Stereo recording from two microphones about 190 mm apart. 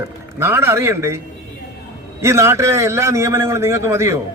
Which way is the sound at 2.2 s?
15° right (ahead or behind).